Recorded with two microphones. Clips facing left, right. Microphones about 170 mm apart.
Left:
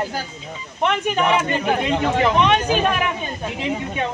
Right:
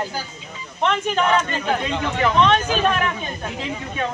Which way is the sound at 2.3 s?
15° left (ahead or behind).